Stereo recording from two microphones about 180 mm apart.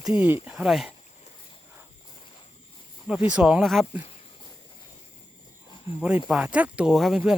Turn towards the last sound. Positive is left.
turn(degrees=-5)  # may be behind; listen again after turning